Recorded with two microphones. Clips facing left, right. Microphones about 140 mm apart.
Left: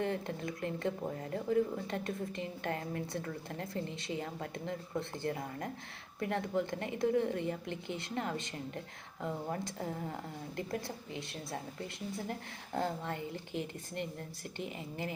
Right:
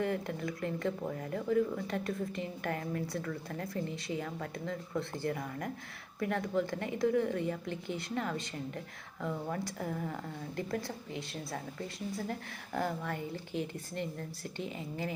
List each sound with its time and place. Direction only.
0.0 s speech: 25° left (ahead or behind)